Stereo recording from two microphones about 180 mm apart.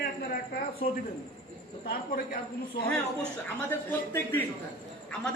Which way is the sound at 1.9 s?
50° left (ahead or behind).